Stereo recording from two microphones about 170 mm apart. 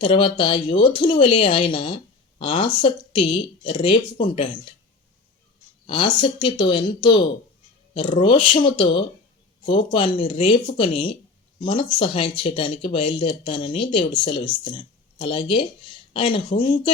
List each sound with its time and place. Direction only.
0.0 s speech: 30° left (ahead or behind)
5.8 s speech: 30° left (ahead or behind)